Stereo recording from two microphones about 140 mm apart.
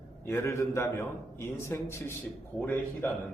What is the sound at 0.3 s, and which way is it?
A man's voice, 20° left (ahead or behind).